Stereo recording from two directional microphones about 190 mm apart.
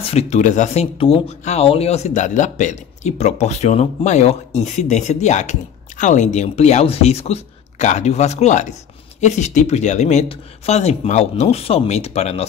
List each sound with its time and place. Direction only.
0.0 s speech: 35° left (ahead or behind)